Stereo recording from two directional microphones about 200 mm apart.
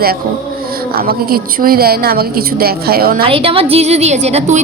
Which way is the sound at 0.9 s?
50° right (ahead or behind).